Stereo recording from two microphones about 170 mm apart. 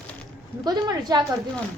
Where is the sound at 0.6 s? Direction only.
20° right (ahead or behind).